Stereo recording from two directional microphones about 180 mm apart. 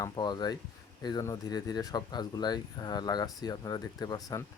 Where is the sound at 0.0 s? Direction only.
25° left (ahead or behind).